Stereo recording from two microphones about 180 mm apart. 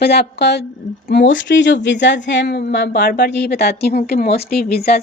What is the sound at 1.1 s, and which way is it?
A woman's voice, 85° left.